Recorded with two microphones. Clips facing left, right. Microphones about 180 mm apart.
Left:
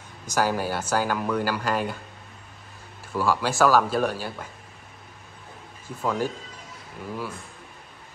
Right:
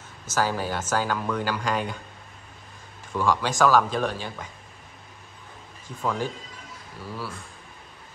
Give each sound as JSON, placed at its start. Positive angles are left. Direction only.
{"t": 0.3, "sound": "speech", "side_deg": 10}
{"t": 3.1, "sound": "speech", "side_deg": 10}
{"t": 5.9, "sound": "speech", "side_deg": 10}